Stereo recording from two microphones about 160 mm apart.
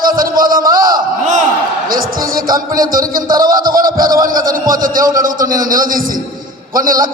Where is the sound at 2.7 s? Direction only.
60° right (ahead or behind).